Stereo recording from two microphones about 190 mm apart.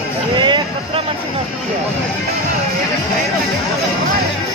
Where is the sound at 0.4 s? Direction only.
25° right (ahead or behind).